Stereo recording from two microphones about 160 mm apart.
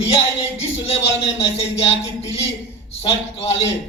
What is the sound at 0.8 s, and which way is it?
A man's voice, 40° left (ahead or behind).